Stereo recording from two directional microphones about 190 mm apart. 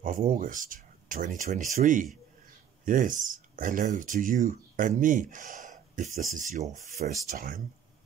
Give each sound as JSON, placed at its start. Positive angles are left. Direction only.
{"t": 0.0, "sound": "speech", "side_deg": -45}